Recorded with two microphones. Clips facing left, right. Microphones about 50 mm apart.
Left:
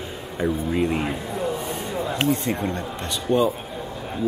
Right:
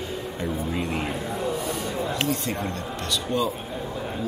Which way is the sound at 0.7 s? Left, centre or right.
Centre.